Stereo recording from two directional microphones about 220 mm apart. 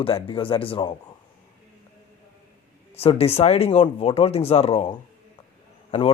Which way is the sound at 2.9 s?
25° left (ahead or behind).